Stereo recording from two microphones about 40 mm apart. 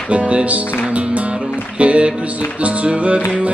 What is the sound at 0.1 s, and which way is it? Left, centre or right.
Speech, right.